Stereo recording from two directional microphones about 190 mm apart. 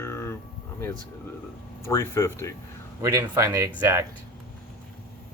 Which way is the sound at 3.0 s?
15° right (ahead or behind).